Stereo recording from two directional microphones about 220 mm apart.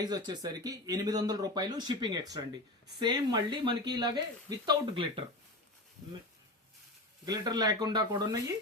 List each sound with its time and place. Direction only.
0.0 s speech: 20° right (ahead or behind)
7.3 s speech: 20° right (ahead or behind)